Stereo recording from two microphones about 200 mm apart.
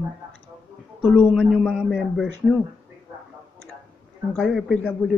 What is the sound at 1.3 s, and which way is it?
A man's voice, 5° right (ahead or behind).